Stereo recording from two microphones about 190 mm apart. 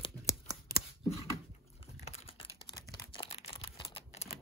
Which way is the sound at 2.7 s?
20° left (ahead or behind).